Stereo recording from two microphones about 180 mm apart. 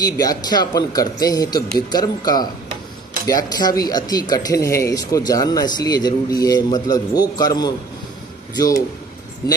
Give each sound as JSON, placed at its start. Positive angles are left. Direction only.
{"t": 0.0, "sound": "speech", "side_deg": 20}